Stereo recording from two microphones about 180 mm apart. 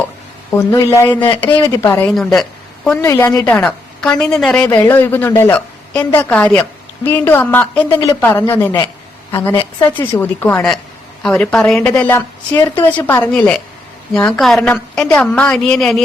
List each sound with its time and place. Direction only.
0.5 s a woman's voice: 15° left (ahead or behind)
2.1 s a woman's voice: centre (ahead or behind)
3.0 s a woman's voice: 15° left (ahead or behind)